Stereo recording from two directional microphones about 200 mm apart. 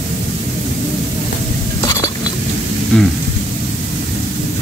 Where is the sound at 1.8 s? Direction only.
20° left (ahead or behind).